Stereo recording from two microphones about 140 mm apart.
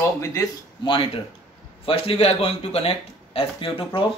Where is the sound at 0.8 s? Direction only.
35° left (ahead or behind).